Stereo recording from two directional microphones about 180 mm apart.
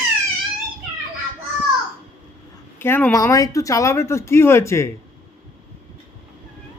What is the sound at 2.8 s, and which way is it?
Speech, 10° left (ahead or behind).